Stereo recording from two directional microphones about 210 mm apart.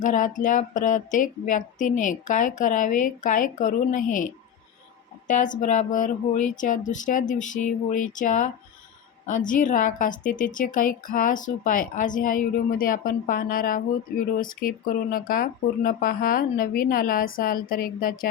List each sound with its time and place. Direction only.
0.0 s a woman's voice: 40° left (ahead or behind)
5.3 s a woman's voice: 35° left (ahead or behind)
9.5 s a woman's voice: 40° left (ahead or behind)